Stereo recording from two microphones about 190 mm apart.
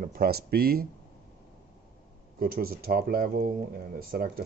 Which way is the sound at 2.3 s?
50° right (ahead or behind).